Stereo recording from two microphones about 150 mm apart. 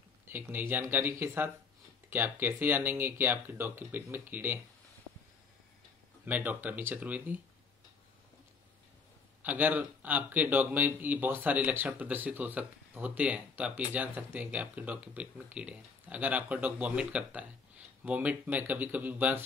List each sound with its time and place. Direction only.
0.3 s speech: 15° right (ahead or behind)
6.2 s speech: 10° right (ahead or behind)
9.4 s speech: 10° right (ahead or behind)